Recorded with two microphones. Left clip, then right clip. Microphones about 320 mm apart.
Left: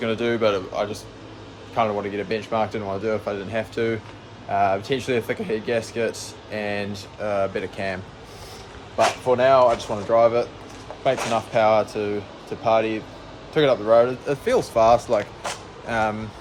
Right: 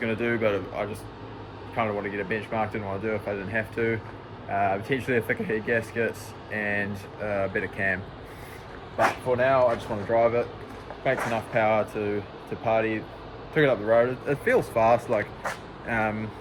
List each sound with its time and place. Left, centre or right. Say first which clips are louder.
0.0 s speech: left 4 dB; centre
9.2 s speech: left 7 dB; centre